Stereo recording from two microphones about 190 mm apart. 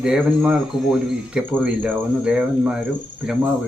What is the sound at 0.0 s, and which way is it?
Speech, 5° right (ahead or behind).